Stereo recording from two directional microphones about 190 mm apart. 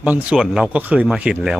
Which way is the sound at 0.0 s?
5° right (ahead or behind).